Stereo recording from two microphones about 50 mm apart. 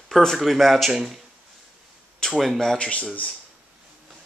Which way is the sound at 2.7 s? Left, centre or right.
Left.